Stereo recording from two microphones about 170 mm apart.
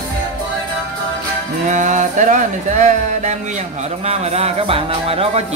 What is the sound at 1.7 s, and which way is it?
Speech, 45° right (ahead or behind).